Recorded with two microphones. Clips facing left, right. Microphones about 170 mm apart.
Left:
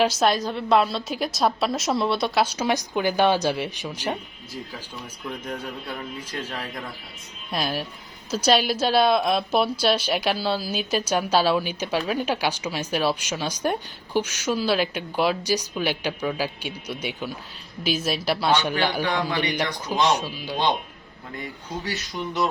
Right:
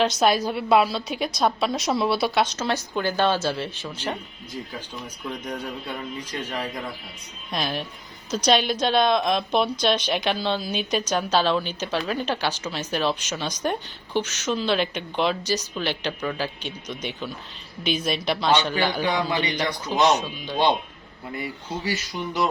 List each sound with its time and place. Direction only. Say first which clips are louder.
0.0 s a woman's voice: even; 5° left (ahead or behind)
0.3 s a woman's voice: right 1 dB; 10° right (ahead or behind)
2.4 s a woman's voice: left 1 dB; 10° left (ahead or behind)
5.5 s a woman's voice: right 1 dB; centre (ahead or behind)
20.1 s a woman's voice: even; 10° left (ahead or behind)
21.3 s a woman's voice: right 2 dB; 5° right (ahead or behind)